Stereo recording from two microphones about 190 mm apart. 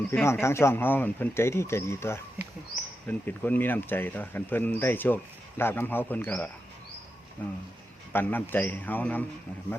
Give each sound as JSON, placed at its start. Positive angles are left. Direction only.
{"t": 0.1, "sound": "speech", "side_deg": 10}